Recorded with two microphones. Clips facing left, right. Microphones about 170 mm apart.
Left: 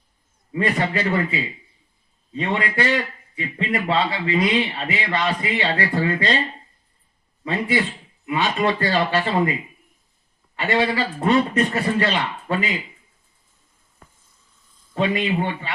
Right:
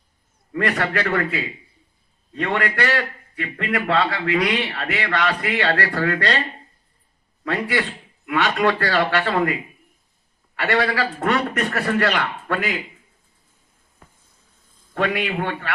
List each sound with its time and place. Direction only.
0.5 s a man's voice: 70° right (ahead or behind)
7.5 s a man's voice: 75° right (ahead or behind)
10.6 s a man's voice: 70° right (ahead or behind)
14.7 s a man's voice: 55° right (ahead or behind)